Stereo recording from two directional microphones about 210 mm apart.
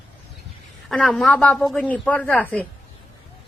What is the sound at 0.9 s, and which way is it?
A woman's voice, centre (ahead or behind).